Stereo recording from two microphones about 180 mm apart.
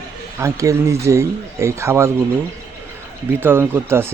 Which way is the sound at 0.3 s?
15° right (ahead or behind).